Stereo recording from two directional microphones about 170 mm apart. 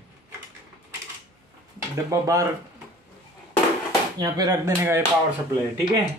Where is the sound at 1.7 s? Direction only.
20° right (ahead or behind).